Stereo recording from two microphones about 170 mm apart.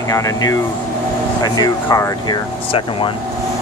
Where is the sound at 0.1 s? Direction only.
20° left (ahead or behind).